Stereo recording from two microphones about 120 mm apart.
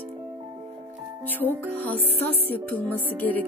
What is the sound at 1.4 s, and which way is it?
Music, 15° left (ahead or behind).